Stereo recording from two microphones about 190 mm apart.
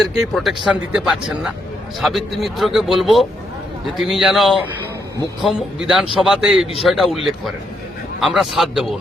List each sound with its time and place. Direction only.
0.0 s speech: centre (ahead or behind)